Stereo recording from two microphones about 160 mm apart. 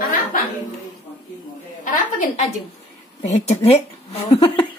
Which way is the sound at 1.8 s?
55° left (ahead or behind).